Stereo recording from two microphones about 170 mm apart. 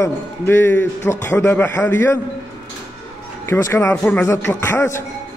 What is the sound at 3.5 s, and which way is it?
A man's voice, 15° left (ahead or behind).